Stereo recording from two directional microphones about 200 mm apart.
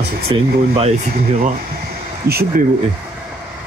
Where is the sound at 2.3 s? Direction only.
50° right (ahead or behind).